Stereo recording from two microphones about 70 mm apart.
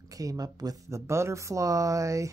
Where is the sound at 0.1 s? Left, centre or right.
Right.